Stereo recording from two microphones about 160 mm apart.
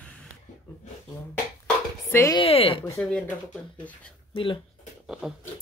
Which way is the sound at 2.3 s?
35° left (ahead or behind).